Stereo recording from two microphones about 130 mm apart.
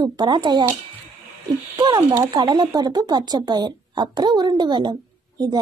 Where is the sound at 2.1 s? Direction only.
35° right (ahead or behind).